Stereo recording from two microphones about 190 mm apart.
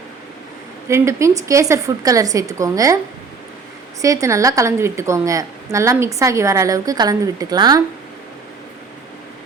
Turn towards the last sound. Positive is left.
turn(degrees=-20)  # may be behind; listen again after turning